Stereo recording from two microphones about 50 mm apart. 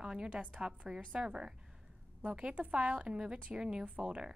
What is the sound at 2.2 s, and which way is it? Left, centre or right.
A woman's voice, right.